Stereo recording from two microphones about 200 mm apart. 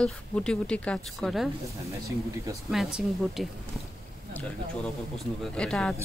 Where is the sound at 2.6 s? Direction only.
Centre (ahead or behind).